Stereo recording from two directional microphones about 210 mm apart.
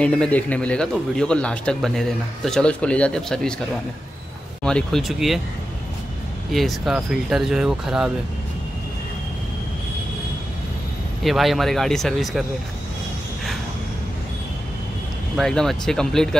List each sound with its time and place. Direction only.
0.0 s speech: 5° left (ahead or behind)
4.6 s speech: centre (ahead or behind)
6.5 s speech: centre (ahead or behind)
11.2 s speech: centre (ahead or behind)
15.3 s speech: centre (ahead or behind)